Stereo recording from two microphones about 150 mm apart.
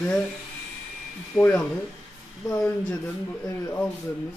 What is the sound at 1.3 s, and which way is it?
Speech, 10° left (ahead or behind).